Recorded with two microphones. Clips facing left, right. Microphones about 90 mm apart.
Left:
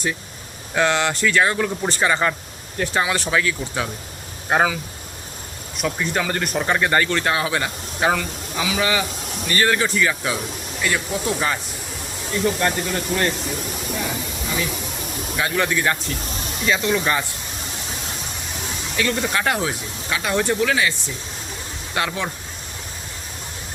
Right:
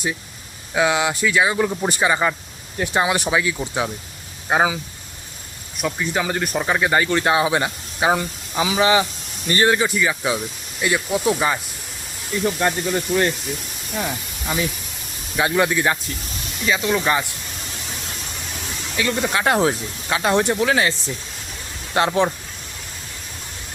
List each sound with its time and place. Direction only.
0.7 s speech: 5° right (ahead or behind)
8.1 s speech: 30° right (ahead or behind); by 13.2 s 10° right (ahead or behind)
15.4 s speech: 20° right (ahead or behind)
16.6 s speech: 5° right (ahead or behind)
18.9 s speech: 10° right (ahead or behind)
19.5 s speech: 30° right (ahead or behind)
20.7 s speech: 35° right (ahead or behind)